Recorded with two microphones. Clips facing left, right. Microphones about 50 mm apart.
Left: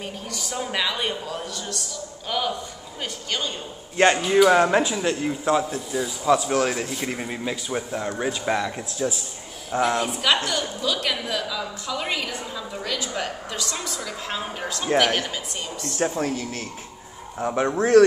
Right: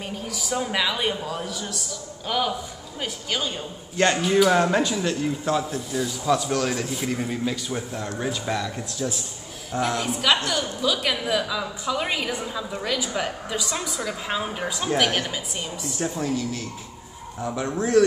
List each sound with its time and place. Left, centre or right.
0.0 s a man's voice: centre
3.9 s speech: left
4.2 s speech: centre
8.5 s speech: left
9.7 s a woman's voice: centre
9.9 s a woman's voice: centre
16.0 s speech: left
17.6 s speech: left